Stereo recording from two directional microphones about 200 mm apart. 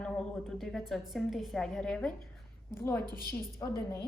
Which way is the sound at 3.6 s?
15° left (ahead or behind).